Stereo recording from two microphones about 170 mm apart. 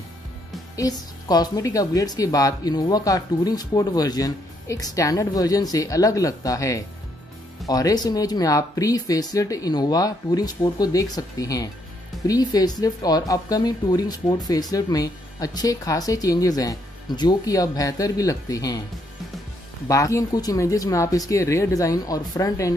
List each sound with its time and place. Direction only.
0.7 s speech: 20° left (ahead or behind)
19.9 s speech: 20° left (ahead or behind)